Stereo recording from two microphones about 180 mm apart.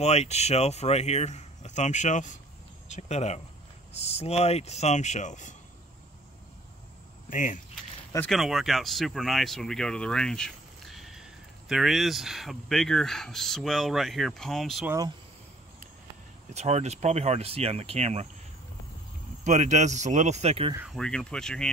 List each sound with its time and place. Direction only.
0.0 s speech: 35° left (ahead or behind)
7.2 s speech: 50° left (ahead or behind)
8.3 s speech: centre (ahead or behind)
16.5 s speech: 40° right (ahead or behind)
19.4 s speech: 40° right (ahead or behind)
20.8 s speech: 5° left (ahead or behind)